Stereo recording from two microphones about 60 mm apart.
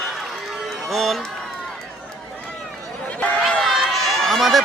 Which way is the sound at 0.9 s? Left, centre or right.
Centre.